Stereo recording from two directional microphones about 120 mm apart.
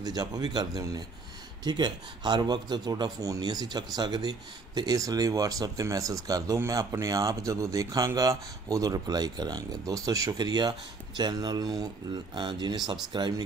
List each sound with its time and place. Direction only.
0.0 s speech: 35° right (ahead or behind)